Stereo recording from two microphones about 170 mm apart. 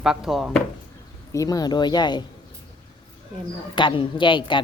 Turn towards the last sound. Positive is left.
turn(degrees=30)  # may be behind; listen again after turning